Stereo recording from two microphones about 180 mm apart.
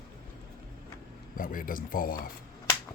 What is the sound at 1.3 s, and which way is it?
Speech, 50° left (ahead or behind).